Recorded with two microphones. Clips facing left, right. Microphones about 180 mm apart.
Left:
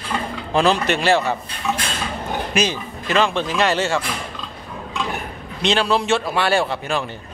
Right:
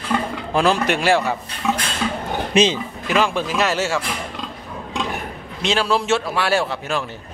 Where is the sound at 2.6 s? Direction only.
30° right (ahead or behind).